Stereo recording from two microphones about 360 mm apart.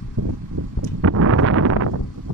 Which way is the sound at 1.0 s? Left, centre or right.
Right.